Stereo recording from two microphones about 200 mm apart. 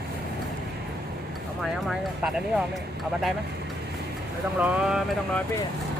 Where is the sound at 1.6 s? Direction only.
Centre (ahead or behind).